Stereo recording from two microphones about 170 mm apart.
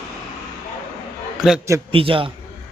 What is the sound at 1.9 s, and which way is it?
Speech, 30° right (ahead or behind).